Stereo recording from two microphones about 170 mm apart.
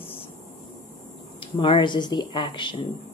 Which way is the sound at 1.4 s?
30° left (ahead or behind).